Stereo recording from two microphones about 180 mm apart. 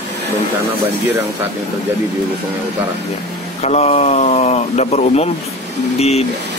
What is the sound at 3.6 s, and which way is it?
Speech, 35° left (ahead or behind).